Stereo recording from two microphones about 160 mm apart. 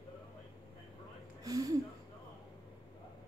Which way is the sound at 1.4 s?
20° right (ahead or behind).